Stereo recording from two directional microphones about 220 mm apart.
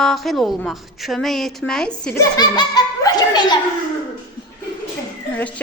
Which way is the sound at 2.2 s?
20° left (ahead or behind).